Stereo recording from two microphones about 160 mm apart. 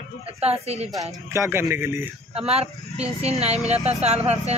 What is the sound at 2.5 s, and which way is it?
Speech, 40° right (ahead or behind).